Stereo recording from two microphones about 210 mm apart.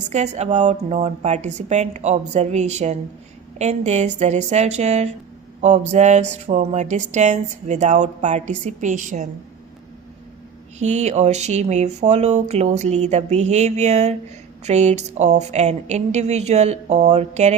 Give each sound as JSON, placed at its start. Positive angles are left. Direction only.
{"t": 0.1, "sound": "speech", "side_deg": -35}
{"t": 10.8, "sound": "speech", "side_deg": -35}